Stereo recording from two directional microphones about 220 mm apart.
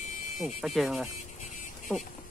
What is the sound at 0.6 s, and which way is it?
Speech, centre (ahead or behind).